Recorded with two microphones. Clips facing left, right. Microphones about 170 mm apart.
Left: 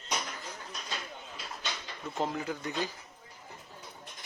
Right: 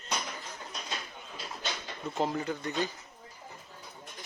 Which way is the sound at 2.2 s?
Centre (ahead or behind).